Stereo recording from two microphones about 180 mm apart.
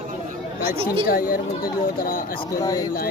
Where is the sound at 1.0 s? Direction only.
55° left (ahead or behind).